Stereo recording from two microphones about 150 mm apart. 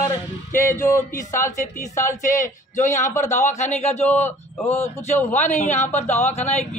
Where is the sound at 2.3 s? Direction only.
55° left (ahead or behind).